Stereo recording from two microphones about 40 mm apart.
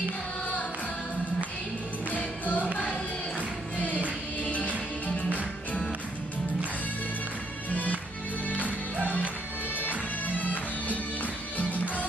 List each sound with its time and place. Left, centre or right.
2.0 s music: left
8.5 s music: left